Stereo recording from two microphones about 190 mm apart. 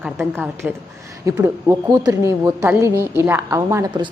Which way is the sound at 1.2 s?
15° right (ahead or behind).